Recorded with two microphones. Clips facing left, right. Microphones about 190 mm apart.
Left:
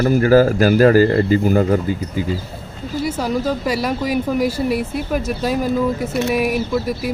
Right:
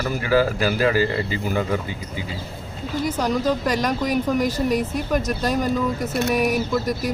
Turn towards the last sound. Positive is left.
turn(degrees=5)  # may be behind; listen again after turning